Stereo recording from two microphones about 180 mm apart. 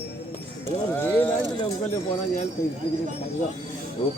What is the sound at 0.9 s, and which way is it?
Speech, 10° left (ahead or behind).